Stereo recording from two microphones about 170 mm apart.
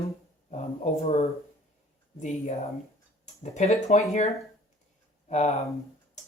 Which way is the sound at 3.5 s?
40° left (ahead or behind).